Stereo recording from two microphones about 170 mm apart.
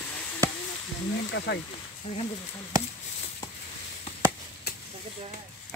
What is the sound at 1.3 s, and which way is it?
Speech, 90° left.